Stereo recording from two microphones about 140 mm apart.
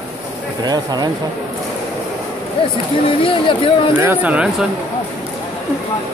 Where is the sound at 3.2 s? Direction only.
40° left (ahead or behind).